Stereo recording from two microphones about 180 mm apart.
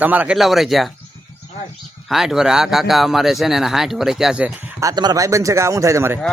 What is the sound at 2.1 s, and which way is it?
Speech, centre (ahead or behind).